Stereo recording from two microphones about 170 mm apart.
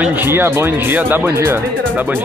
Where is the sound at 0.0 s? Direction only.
10° right (ahead or behind).